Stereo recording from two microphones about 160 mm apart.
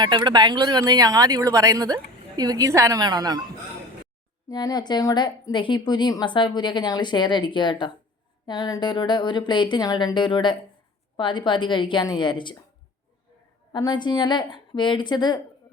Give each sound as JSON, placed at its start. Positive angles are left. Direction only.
{"t": 0.0, "sound": "speech", "side_deg": -30}
{"t": 4.4, "sound": "a woman's voice", "side_deg": 25}
{"t": 13.7, "sound": "a woman's voice", "side_deg": 25}